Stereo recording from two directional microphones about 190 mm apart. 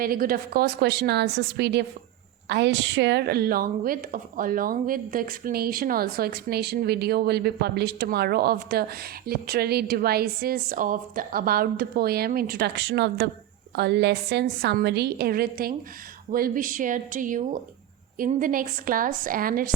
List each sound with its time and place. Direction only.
0.0 s a woman's voice: 50° right (ahead or behind)